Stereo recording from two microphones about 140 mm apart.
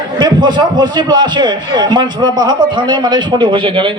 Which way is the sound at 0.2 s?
30° right (ahead or behind).